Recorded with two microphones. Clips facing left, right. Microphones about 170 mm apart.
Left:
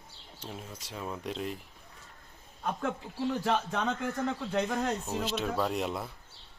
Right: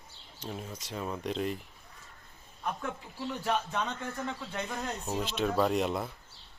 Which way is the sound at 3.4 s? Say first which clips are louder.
Right 2 dB; 90° left.